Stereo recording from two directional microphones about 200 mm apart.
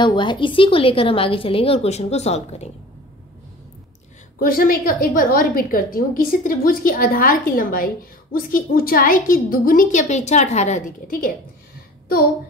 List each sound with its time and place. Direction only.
0.0 s a woman's voice: 25° left (ahead or behind)
4.4 s a woman's voice: 45° left (ahead or behind)